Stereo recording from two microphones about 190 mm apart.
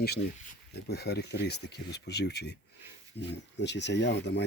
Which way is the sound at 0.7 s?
60° left (ahead or behind).